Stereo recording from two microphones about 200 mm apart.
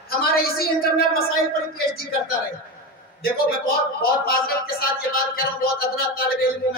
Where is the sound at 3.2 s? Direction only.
50° left (ahead or behind).